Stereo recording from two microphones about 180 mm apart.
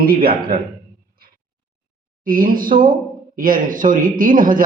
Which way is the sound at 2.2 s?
50° right (ahead or behind).